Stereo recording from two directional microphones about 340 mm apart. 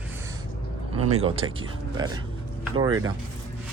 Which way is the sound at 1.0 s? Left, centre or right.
Right.